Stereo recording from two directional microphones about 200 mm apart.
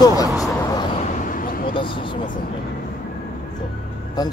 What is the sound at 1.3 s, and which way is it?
Vehicle, 45° left (ahead or behind).